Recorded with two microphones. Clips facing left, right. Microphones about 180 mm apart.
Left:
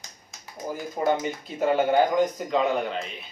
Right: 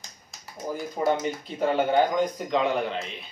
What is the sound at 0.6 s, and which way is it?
Speech, centre (ahead or behind).